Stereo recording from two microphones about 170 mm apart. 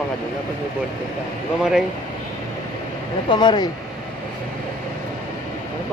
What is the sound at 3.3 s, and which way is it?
Speech, 25° left (ahead or behind).